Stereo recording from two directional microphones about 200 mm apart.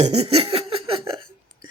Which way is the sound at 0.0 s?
30° right (ahead or behind).